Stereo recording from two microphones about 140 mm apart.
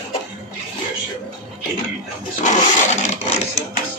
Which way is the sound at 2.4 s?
55° left (ahead or behind).